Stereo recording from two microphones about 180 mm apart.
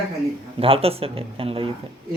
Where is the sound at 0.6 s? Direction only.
30° right (ahead or behind).